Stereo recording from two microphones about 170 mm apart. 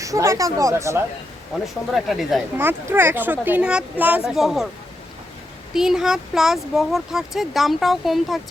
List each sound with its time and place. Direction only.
0.0 s speech: 20° right (ahead or behind)
1.6 s speech: centre (ahead or behind)
2.6 s speech: 15° right (ahead or behind)
5.7 s speech: centre (ahead or behind)